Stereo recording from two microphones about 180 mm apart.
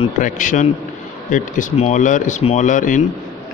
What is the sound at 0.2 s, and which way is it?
Speech, 45° left (ahead or behind).